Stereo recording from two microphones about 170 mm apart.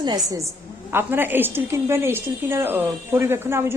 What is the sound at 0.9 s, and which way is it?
A woman's voice, 10° right (ahead or behind).